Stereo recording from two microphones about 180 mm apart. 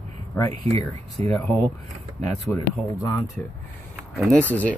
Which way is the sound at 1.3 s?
10° left (ahead or behind).